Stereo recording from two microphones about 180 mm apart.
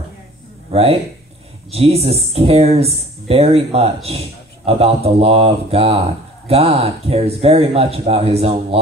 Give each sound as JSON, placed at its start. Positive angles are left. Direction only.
{"t": 1.7, "sound": "speech", "side_deg": -35}